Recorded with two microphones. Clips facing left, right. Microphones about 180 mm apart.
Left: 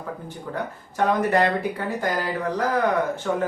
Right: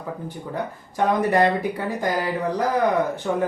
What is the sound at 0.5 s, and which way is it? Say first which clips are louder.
Speech: even; 15° right (ahead or behind).